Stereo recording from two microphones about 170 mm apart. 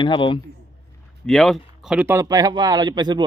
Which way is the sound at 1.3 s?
5° left (ahead or behind).